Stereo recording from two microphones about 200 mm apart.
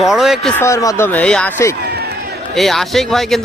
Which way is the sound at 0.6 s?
15° left (ahead or behind).